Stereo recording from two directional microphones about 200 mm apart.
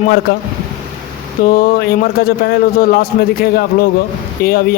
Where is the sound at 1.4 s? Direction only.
45° left (ahead or behind).